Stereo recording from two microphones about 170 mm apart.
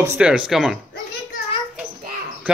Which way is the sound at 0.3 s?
5° right (ahead or behind).